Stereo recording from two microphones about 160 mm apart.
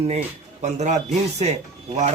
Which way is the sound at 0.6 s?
45° right (ahead or behind).